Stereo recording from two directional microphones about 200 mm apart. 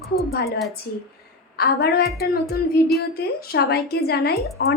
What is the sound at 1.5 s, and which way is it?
A woman's voice, 50° left (ahead or behind).